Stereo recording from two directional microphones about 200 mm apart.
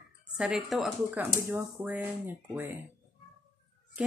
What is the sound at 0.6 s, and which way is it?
Speech, centre (ahead or behind).